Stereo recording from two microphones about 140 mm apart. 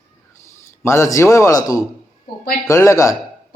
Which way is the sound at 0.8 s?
20° left (ahead or behind).